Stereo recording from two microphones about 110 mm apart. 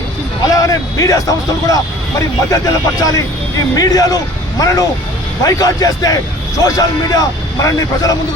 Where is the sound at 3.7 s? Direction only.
35° left (ahead or behind).